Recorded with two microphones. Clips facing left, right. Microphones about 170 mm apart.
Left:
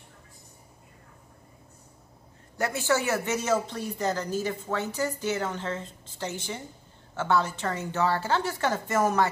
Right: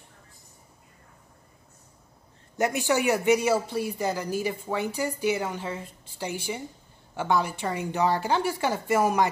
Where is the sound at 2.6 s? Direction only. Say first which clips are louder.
Right 2 dB; 15° right (ahead or behind).